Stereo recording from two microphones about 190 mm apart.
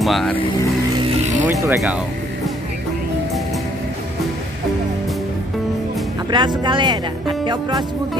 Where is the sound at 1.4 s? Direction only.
15° right (ahead or behind).